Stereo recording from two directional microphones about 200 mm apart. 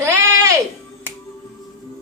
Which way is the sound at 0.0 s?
10° right (ahead or behind).